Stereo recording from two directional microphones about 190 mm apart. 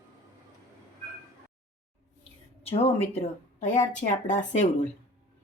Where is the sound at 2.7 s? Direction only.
35° left (ahead or behind).